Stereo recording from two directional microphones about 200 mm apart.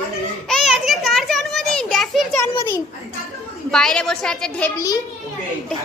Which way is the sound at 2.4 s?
15° left (ahead or behind).